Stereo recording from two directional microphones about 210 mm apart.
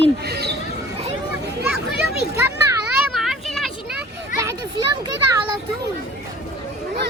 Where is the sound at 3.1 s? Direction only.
Centre (ahead or behind).